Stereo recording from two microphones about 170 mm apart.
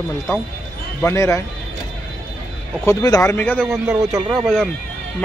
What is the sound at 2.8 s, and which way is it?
Speech, 20° left (ahead or behind).